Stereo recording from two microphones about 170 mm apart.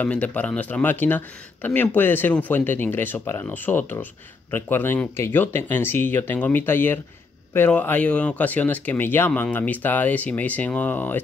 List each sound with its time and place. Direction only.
0.0 s speech: 10° left (ahead or behind)